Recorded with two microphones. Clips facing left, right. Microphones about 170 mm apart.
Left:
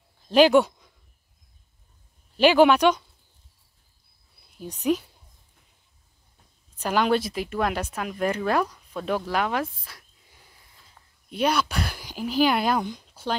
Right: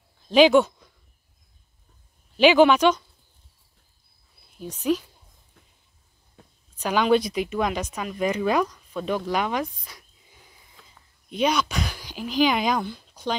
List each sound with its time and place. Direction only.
0.3 s speech: 10° left (ahead or behind)
2.3 s speech: 10° left (ahead or behind)
4.6 s speech: 10° left (ahead or behind)
6.4 s a sound: 90° right
6.9 s speech: 5° left (ahead or behind)
11.2 s speech: 5° left (ahead or behind)
13.1 s a sound: 5° left (ahead or behind)